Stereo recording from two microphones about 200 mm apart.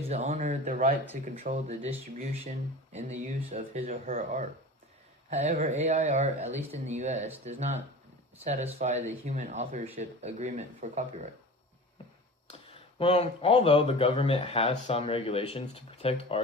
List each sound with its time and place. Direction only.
0.1 s speech: 35° right (ahead or behind)
12.5 s speech: 30° left (ahead or behind)